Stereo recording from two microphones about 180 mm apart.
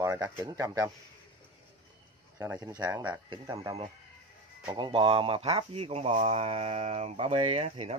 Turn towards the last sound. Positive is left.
turn(degrees=-35)  # may be behind; listen again after turning